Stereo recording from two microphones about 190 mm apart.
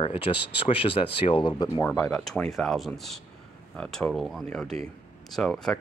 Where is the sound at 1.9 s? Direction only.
5° left (ahead or behind).